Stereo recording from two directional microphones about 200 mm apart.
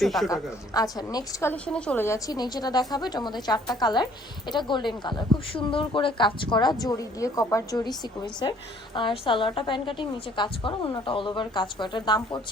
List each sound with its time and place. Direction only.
0.0 s a woman's voice: centre (ahead or behind)
0.7 s speech: 20° left (ahead or behind)